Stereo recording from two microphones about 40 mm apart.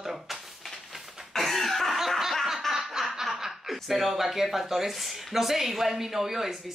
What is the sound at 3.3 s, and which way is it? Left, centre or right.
A man's voice, centre.